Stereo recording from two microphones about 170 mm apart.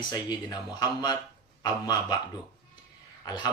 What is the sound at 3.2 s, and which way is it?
Speech, 25° left (ahead or behind).